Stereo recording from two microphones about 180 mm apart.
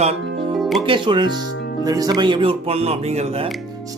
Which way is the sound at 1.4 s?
80° left.